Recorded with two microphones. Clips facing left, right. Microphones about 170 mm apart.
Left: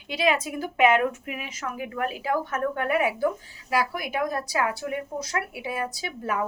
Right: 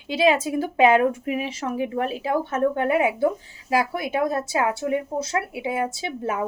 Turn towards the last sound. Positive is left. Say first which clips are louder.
# right 2 dB
turn(degrees=-25)  # may be behind; listen again after turning